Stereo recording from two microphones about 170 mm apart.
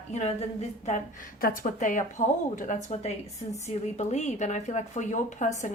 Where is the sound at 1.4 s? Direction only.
50° left (ahead or behind).